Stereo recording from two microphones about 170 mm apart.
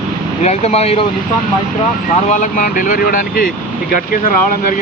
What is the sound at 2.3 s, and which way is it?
Speech, 50° left (ahead or behind).